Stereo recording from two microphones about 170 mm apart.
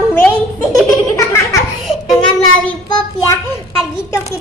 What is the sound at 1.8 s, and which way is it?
Child singing, centre (ahead or behind).